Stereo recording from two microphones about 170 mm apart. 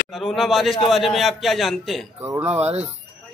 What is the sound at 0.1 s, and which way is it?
A man's voice, centre (ahead or behind).